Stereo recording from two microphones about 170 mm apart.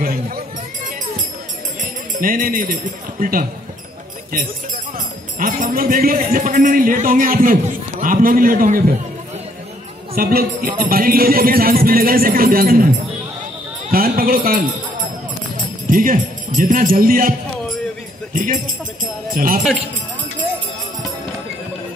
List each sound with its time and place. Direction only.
1.8 s speech: 50° right (ahead or behind)
4.9 s speech: 50° right (ahead or behind)
10.1 s speech: 60° right (ahead or behind)
13.8 s a sound: 60° right (ahead or behind)
15.5 s speech: 50° right (ahead or behind)